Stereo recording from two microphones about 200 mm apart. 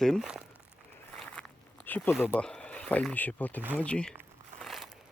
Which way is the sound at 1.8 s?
10° left (ahead or behind).